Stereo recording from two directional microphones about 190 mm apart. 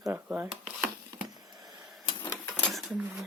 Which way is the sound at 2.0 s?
25° left (ahead or behind).